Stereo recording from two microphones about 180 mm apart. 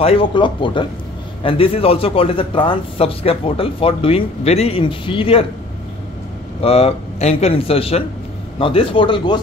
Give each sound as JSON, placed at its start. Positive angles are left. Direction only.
{"t": 0.0, "sound": "speech", "side_deg": 30}
{"t": 6.6, "sound": "speech", "side_deg": 35}